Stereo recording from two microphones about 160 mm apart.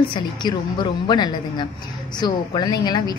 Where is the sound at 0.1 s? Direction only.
30° left (ahead or behind).